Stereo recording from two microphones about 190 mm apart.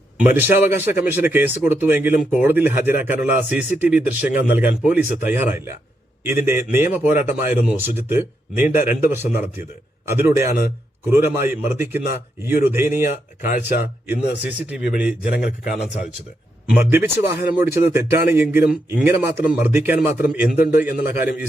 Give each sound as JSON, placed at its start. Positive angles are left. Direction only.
{"t": 0.2, "sound": "a man's voice", "side_deg": -10}
{"t": 15.3, "sound": "a man's voice", "side_deg": 55}
{"t": 16.7, "sound": "a man's voice", "side_deg": -10}